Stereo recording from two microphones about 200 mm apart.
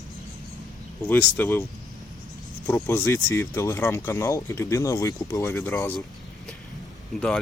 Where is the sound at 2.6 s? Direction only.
10° left (ahead or behind).